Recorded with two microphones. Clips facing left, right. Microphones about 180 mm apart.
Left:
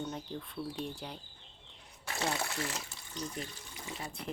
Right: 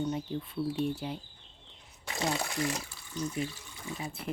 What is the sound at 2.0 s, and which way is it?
Speech, 20° right (ahead or behind).